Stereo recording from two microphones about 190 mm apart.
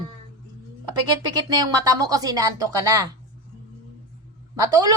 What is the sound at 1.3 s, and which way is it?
A woman's voice, 20° right (ahead or behind).